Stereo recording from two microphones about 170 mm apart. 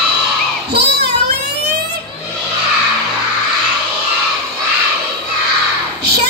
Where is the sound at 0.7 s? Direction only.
75° right (ahead or behind).